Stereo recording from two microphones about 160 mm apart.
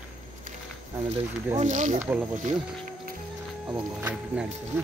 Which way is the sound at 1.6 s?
50° right (ahead or behind).